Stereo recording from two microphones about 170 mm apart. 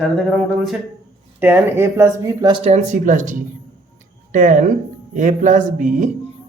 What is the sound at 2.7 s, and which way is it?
Speech, 45° right (ahead or behind).